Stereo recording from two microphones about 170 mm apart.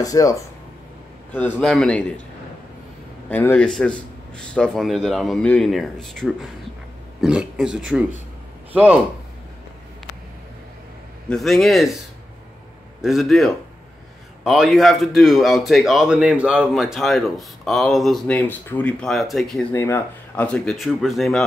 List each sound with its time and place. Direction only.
0.0 s speech: 20° left (ahead or behind)
1.3 s a man's voice: 5° left (ahead or behind)
3.3 s speech: 10° left (ahead or behind); by 9.0 s 10° right (ahead or behind)
11.2 s speech: centre (ahead or behind)
13.0 s speech: centre (ahead or behind)
19.7 s speech: 15° left (ahead or behind)